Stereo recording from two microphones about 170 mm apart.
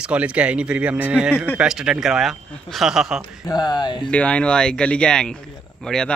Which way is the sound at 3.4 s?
25° left (ahead or behind).